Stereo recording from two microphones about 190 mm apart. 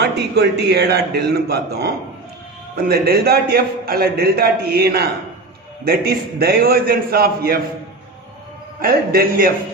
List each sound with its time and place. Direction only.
0.0 s a man's voice: 60° right (ahead or behind)
8.7 s a man's voice: 50° right (ahead or behind)